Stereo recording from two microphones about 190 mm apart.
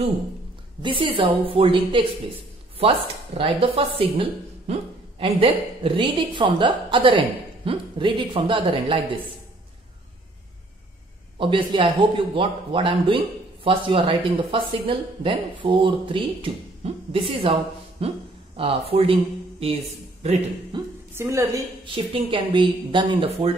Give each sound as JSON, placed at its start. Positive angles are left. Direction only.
{"t": 0.8, "sound": "speech", "side_deg": -25}
{"t": 3.3, "sound": "speech", "side_deg": -30}
{"t": 11.3, "sound": "speech", "side_deg": -25}
{"t": 20.7, "sound": "speech", "side_deg": -25}
{"t": 21.1, "sound": "a woman's voice", "side_deg": -15}
{"t": 21.9, "sound": "speech", "side_deg": -25}